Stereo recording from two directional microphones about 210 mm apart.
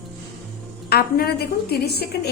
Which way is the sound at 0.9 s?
50° left (ahead or behind).